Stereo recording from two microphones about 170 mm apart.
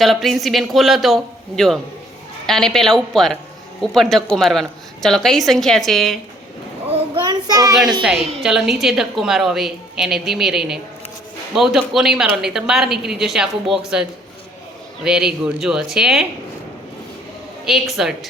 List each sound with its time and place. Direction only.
0.0 s a woman's voice: centre (ahead or behind)
6.9 s child singing: 25° right (ahead or behind)
8.0 s a woman's voice: centre (ahead or behind)
17.7 s a woman's voice: centre (ahead or behind)